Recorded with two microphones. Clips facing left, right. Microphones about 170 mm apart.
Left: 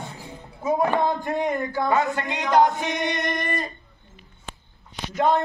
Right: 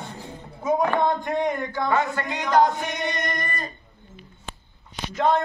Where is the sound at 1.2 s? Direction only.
5° left (ahead or behind).